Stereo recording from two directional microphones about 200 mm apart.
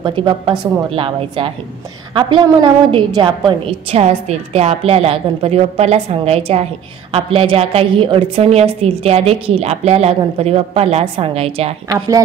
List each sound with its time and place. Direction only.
0.0 s a woman's voice: 25° right (ahead or behind)